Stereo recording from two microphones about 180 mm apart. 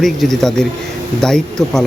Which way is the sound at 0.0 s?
Centre (ahead or behind).